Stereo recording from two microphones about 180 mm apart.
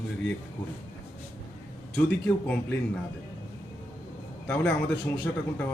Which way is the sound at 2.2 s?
10° left (ahead or behind).